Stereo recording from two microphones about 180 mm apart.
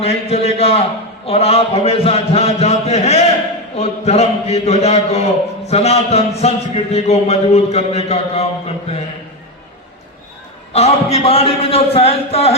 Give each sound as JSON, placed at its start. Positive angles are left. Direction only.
{"t": 0.0, "sound": "a man's voice", "side_deg": 35}
{"t": 10.7, "sound": "a man's voice", "side_deg": 35}